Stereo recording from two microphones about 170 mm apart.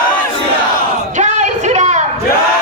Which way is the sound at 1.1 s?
45° right (ahead or behind).